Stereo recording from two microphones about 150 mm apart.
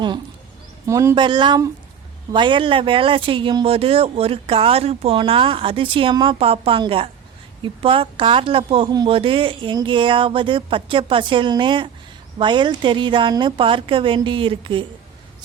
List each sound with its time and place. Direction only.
0.9 s speech: 20° right (ahead or behind)